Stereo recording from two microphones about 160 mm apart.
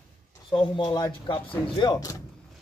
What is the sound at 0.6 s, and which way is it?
Speech, 30° left (ahead or behind).